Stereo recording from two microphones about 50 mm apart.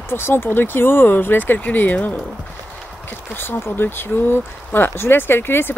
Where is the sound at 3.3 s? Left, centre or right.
Left.